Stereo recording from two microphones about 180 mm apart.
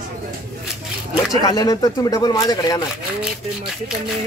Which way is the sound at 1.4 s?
20° left (ahead or behind).